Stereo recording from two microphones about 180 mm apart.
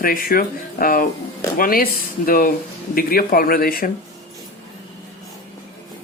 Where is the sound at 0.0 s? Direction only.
55° left (ahead or behind).